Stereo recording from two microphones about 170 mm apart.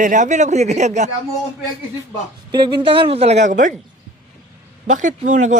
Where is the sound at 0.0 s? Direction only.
45° right (ahead or behind).